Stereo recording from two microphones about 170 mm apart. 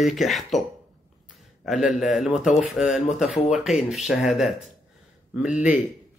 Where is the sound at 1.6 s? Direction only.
Centre (ahead or behind).